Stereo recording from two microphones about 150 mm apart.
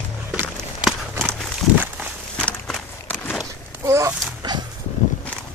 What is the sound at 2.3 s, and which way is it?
Walk, 5° left (ahead or behind).